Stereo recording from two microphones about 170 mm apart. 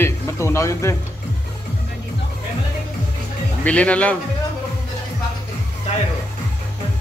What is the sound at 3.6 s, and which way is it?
Speech, 5° left (ahead or behind).